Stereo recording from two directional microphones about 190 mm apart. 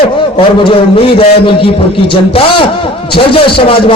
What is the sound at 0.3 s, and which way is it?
A man's voice, 30° left (ahead or behind).